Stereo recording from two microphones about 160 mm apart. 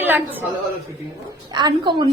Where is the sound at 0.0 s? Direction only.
10° right (ahead or behind).